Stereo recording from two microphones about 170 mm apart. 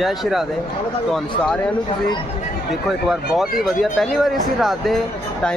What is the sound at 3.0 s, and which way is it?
Speech, centre (ahead or behind).